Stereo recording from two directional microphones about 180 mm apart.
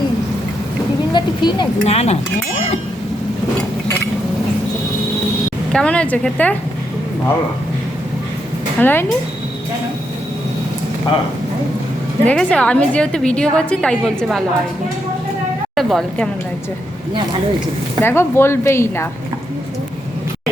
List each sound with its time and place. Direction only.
1.1 s a sound: 25° left (ahead or behind)
1.8 s speech: 35° left (ahead or behind)
5.7 s speech: 5° left (ahead or behind)
8.8 s speech: 10° left (ahead or behind)
12.2 s a woman's voice: 5° left (ahead or behind)
15.7 s speech: centre (ahead or behind)
18.0 s speech: 15° left (ahead or behind)